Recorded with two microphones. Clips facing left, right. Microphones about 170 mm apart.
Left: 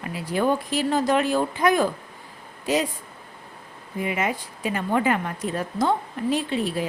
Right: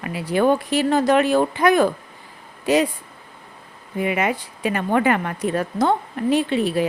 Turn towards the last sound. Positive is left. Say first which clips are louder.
# right 5 dB
turn(degrees=-65)  # may be behind; listen again after turning